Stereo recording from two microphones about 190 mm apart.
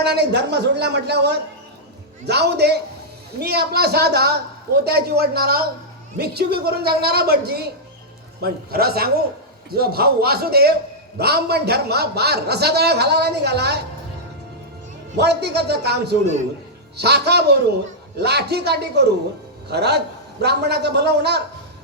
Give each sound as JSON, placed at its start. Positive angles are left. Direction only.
{"t": 0.0, "sound": "a man's voice", "side_deg": -60}
{"t": 15.2, "sound": "a man's voice", "side_deg": -60}